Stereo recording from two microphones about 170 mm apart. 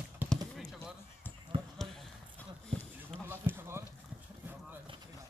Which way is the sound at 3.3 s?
15° right (ahead or behind).